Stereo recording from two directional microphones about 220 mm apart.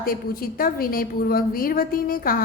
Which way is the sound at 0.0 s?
40° left (ahead or behind).